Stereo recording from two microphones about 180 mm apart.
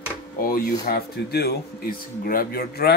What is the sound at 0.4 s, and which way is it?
Speech, 55° left (ahead or behind).